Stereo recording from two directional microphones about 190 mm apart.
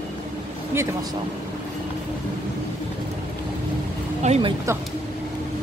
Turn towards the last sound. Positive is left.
turn(degrees=-35)  # may be behind; listen again after turning